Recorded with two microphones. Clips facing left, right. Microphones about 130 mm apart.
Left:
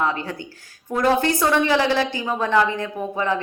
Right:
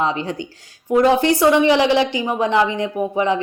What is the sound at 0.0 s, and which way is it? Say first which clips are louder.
A woman's voice: right 3 dB; 15° right (ahead or behind).